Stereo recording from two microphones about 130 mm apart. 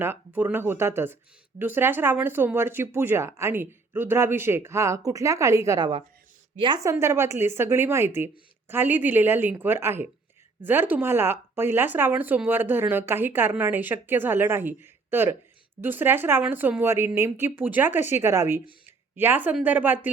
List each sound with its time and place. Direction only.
0.0 s speech: 15° right (ahead or behind)
6.9 s speech: 20° right (ahead or behind)
18.9 s a sound: 15° right (ahead or behind)
19.6 s speech: 15° right (ahead or behind)